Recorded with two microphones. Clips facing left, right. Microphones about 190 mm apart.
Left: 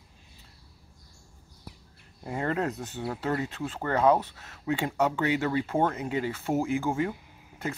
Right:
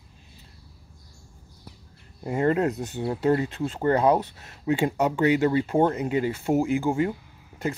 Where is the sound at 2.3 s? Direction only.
15° right (ahead or behind).